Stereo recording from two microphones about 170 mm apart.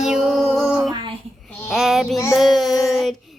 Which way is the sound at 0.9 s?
25° right (ahead or behind).